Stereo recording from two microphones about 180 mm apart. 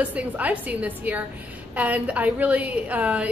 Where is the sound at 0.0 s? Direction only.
10° right (ahead or behind).